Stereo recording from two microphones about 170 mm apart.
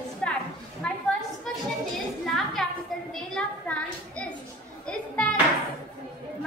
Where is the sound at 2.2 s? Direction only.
Centre (ahead or behind).